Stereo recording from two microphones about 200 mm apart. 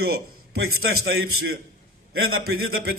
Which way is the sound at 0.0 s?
90° right.